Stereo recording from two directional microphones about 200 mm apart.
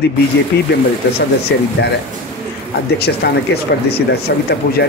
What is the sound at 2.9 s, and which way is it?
Speech, 55° left (ahead or behind).